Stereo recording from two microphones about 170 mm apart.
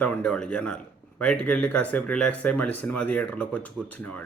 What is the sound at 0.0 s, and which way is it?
A man's voice, 5° left (ahead or behind).